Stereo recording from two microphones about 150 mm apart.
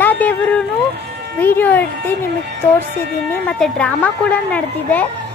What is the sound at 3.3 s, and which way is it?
Speech, 5° left (ahead or behind).